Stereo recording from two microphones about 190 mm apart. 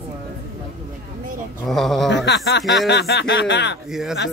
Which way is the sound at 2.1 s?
65° left (ahead or behind).